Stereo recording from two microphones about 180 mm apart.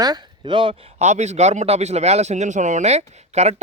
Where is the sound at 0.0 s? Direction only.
25° right (ahead or behind).